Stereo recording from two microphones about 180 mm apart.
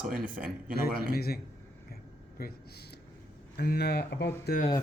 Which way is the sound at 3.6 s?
60° left (ahead or behind).